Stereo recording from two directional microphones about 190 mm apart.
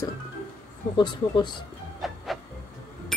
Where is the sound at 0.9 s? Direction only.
25° left (ahead or behind).